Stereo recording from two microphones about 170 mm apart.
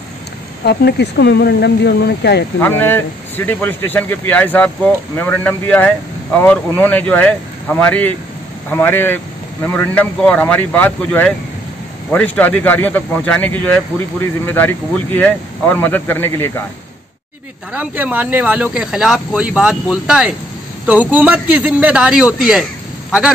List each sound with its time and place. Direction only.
0.7 s speech: 80° left
2.6 s speech: 10° left (ahead or behind)
17.7 s speech: 10° right (ahead or behind)